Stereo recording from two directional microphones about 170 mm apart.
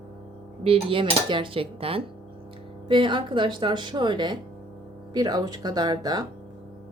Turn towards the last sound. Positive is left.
turn(degrees=-25)  # may be behind; listen again after turning